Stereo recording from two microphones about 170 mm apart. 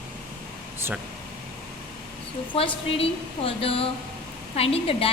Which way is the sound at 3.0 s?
35° left (ahead or behind).